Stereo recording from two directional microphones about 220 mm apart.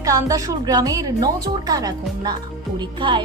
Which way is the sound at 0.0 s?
15° right (ahead or behind).